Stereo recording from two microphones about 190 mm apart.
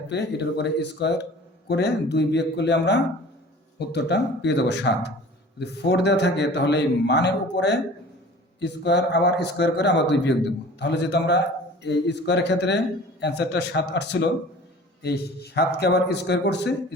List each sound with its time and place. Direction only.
0.1 s a man's voice: 60° left (ahead or behind)